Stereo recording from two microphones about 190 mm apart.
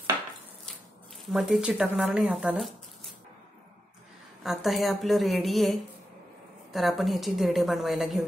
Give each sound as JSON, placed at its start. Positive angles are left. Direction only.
{"t": 1.3, "sound": "a woman's voice", "side_deg": -5}
{"t": 4.4, "sound": "a woman's voice", "side_deg": 0}